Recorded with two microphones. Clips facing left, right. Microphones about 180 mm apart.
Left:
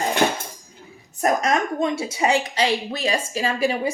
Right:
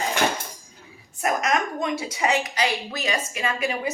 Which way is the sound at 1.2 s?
30° left (ahead or behind).